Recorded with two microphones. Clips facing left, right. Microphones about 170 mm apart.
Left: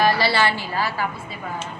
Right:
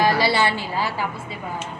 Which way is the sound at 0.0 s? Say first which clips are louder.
Even; 20° right (ahead or behind).